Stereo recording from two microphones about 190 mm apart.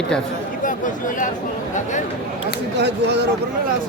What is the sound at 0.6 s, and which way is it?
Chatter, 45° left (ahead or behind).